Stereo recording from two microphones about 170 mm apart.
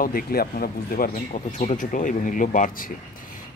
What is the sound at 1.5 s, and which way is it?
Speech, 50° left (ahead or behind).